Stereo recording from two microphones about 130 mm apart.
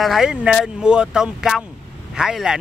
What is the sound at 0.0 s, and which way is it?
Speech, 5° right (ahead or behind).